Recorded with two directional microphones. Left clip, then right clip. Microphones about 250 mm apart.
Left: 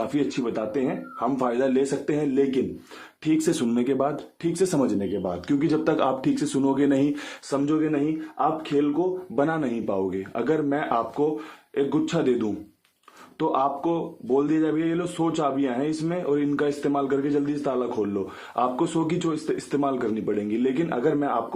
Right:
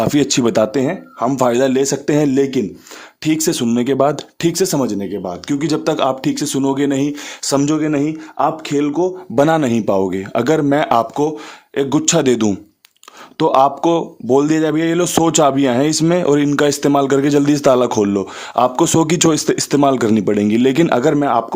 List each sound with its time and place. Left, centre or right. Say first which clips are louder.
0.1 s speech: right 11 dB; right
3.2 s a man's voice: right 6 dB; right
7.5 s a man's voice: right 8 dB; right